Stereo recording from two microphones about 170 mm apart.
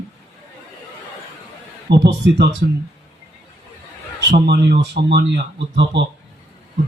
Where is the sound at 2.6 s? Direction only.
75° right (ahead or behind).